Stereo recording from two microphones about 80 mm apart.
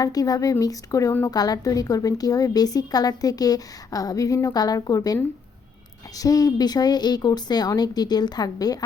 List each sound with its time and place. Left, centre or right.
0.0 s a woman's voice: left
4.5 s a woman's voice: left